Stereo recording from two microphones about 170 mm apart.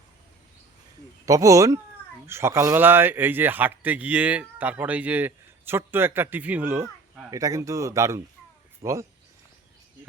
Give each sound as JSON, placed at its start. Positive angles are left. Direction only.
{"t": 1.2, "sound": "a man's voice", "side_deg": -20}